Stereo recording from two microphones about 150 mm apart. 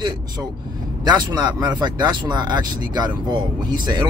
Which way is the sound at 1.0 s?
30° right (ahead or behind).